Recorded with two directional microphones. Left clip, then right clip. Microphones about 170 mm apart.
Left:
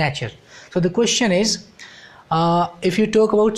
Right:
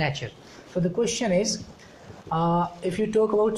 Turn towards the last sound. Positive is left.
turn(degrees=50)  # may be behind; listen again after turning